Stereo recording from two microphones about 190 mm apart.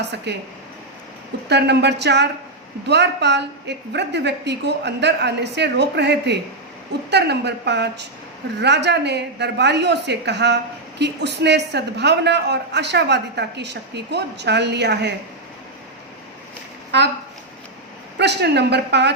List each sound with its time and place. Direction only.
0.3 s a man's voice: 65° right (ahead or behind)
1.5 s a man's voice: 60° right (ahead or behind)
16.9 s a man's voice: 65° right (ahead or behind)
18.2 s a man's voice: 60° right (ahead or behind)